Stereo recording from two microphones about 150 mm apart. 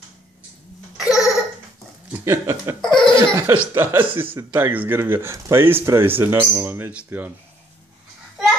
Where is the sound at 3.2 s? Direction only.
20° right (ahead or behind).